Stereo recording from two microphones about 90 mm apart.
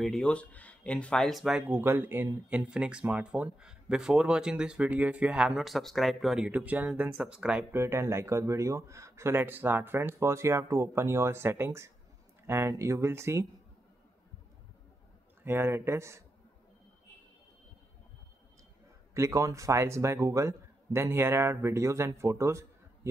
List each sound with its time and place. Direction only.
0.0 s speech: 5° left (ahead or behind)
1.6 s a man's voice: 25° right (ahead or behind)
2.5 s speech: 10° right (ahead or behind)
6.5 s speech: 15° right (ahead or behind)
7.7 s speech: 30° right (ahead or behind)
15.4 s a man's voice: 25° right (ahead or behind)
19.1 s speech: 35° right (ahead or behind)